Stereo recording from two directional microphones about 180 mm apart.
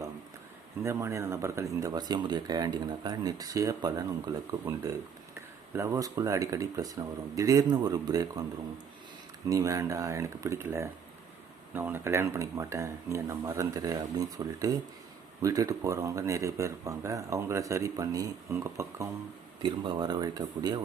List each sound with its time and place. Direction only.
0.8 s speech: 15° right (ahead or behind)
5.7 s speech: 15° right (ahead or behind)
9.5 s speech: 20° right (ahead or behind)
19.6 s speech: 25° right (ahead or behind)